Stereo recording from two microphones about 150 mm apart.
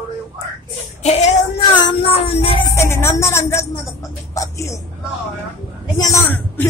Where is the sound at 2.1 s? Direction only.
40° left (ahead or behind).